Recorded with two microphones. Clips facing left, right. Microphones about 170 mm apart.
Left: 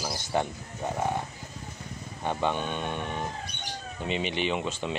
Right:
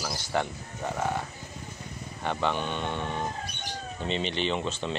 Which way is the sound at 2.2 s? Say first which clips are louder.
Even; 15° left (ahead or behind).